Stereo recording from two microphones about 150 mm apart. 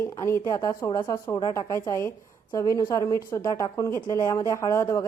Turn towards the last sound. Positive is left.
turn(degrees=20)  # may be behind; listen again after turning